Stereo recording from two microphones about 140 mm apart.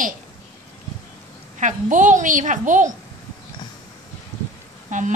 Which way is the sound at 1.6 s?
65° right (ahead or behind).